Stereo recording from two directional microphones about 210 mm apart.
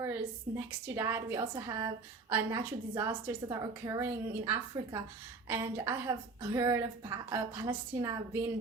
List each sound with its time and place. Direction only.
0.0 s a woman's voice: 10° right (ahead or behind)